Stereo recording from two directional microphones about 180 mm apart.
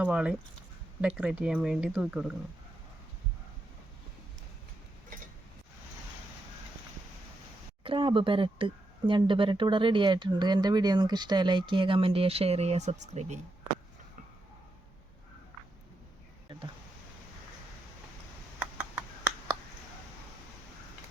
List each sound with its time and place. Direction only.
0.0 s speech: 5° right (ahead or behind)
7.9 s speech: 30° right (ahead or behind)